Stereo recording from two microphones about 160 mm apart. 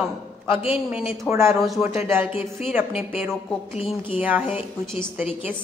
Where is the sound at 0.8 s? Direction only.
5° right (ahead or behind).